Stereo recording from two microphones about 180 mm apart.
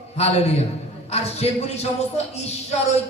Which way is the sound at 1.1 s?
35° left (ahead or behind).